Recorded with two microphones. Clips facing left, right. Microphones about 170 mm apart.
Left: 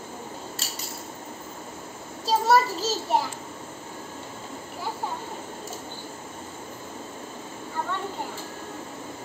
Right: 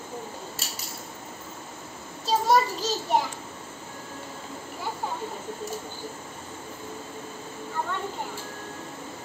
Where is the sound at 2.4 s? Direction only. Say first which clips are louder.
Left 1 dB; 5° left (ahead or behind).